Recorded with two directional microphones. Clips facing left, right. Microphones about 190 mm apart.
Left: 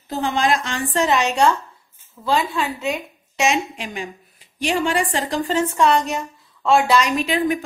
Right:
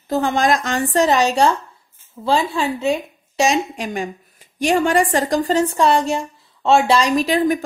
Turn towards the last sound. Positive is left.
turn(degrees=-40)  # may be behind; listen again after turning